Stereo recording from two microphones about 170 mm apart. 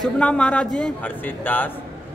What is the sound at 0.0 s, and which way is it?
A man's voice, 5° left (ahead or behind).